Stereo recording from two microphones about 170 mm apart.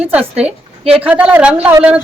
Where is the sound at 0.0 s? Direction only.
10° right (ahead or behind).